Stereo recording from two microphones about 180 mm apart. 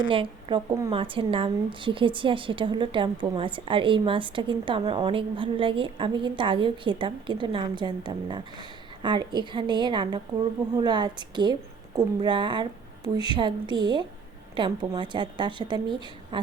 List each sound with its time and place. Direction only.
0.1 s a woman's voice: 30° right (ahead or behind)